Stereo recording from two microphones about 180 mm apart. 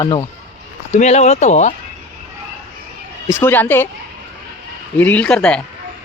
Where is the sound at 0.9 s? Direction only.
40° left (ahead or behind).